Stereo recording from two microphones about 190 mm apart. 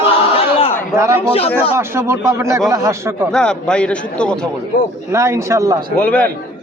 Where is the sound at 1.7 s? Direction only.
15° right (ahead or behind).